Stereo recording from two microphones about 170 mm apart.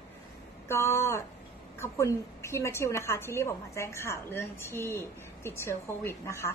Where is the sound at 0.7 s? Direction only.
15° left (ahead or behind).